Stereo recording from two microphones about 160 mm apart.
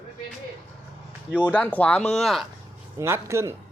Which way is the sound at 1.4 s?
10° left (ahead or behind).